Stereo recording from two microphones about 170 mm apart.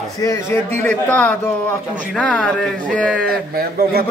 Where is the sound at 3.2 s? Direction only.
60° right (ahead or behind).